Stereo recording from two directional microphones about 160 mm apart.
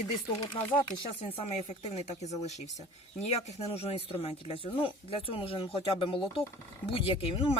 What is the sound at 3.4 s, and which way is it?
Speech, 40° left (ahead or behind).